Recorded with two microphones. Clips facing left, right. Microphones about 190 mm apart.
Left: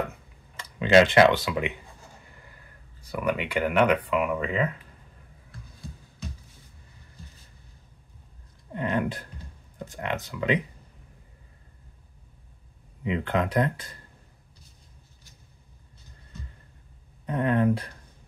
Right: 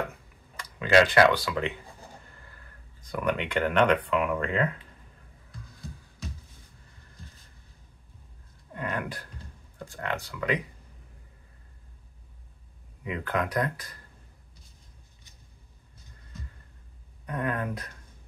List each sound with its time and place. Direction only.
0.6 s speech: 25° left (ahead or behind)
3.0 s speech: 5° left (ahead or behind)
8.7 s a sound: 25° left (ahead or behind)
9.8 s speech: 20° left (ahead or behind)
13.0 s speech: 25° left (ahead or behind)
17.3 s speech: 25° left (ahead or behind)